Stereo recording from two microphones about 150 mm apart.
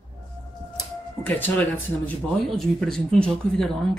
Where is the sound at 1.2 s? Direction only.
15° left (ahead or behind).